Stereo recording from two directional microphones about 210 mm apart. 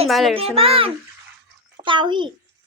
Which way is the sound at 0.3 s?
25° right (ahead or behind).